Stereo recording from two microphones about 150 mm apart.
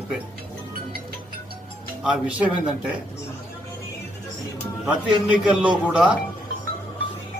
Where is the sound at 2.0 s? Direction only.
5° right (ahead or behind).